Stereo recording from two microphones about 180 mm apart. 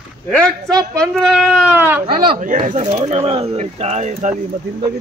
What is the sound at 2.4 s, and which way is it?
Speech, 45° right (ahead or behind).